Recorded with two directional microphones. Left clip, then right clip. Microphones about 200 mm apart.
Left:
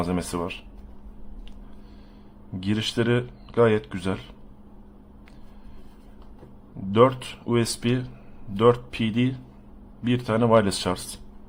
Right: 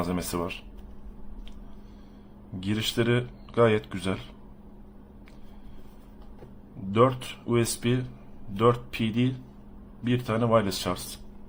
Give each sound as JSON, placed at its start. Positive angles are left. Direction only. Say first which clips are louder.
{"t": 0.0, "sound": "speech", "louder": "left 3 dB", "side_deg": 15}
{"t": 2.6, "sound": "speech", "louder": "left 2 dB", "side_deg": 15}
{"t": 6.9, "sound": "speech", "louder": "left 4 dB", "side_deg": 15}